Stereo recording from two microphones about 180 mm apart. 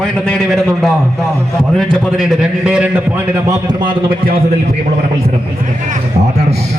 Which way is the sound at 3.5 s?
25° right (ahead or behind).